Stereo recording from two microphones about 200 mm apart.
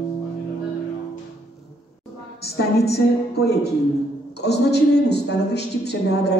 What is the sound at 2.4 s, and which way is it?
A woman's voice, 55° left (ahead or behind).